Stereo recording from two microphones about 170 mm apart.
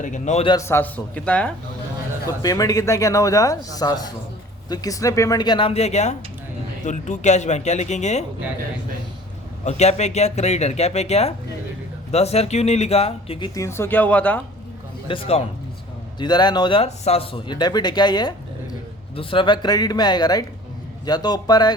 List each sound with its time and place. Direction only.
0.0 s speech: 45° left (ahead or behind)
0.4 s a man's voice: 20° left (ahead or behind)
2.4 s speech: 20° left (ahead or behind); by 8.2 s 40° left (ahead or behind)
9.6 s speech: 40° left (ahead or behind)
13.5 s a man's voice: 15° left (ahead or behind)
15.0 s speech: 30° left (ahead or behind)